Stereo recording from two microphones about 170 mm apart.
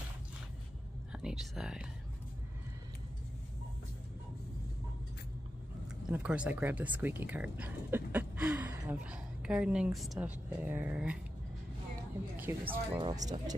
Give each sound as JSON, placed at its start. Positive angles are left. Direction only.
{"t": 1.1, "sound": "speech", "side_deg": 0}
{"t": 6.0, "sound": "speech", "side_deg": -5}
{"t": 12.4, "sound": "speech", "side_deg": -10}
{"t": 12.9, "sound": "speech", "side_deg": -25}